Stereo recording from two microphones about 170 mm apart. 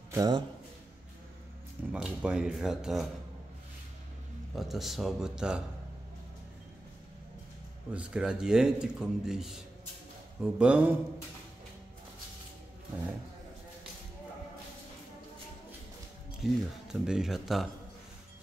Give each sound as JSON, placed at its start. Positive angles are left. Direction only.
{"t": 0.1, "sound": "a man's voice", "side_deg": -20}
{"t": 1.9, "sound": "speech", "side_deg": -5}
{"t": 4.6, "sound": "speech", "side_deg": 0}
{"t": 7.9, "sound": "speech", "side_deg": -5}
{"t": 16.3, "sound": "speech", "side_deg": -5}